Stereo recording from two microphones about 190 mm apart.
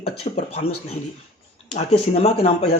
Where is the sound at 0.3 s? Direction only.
40° left (ahead or behind).